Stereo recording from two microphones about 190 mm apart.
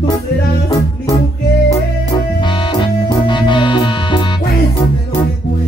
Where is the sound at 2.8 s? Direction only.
25° left (ahead or behind).